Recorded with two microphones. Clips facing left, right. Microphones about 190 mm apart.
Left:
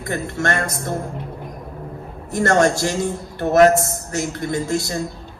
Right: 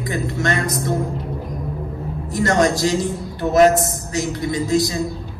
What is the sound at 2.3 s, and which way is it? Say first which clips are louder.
A man's voice: left 1 dB; 55° left (ahead or behind).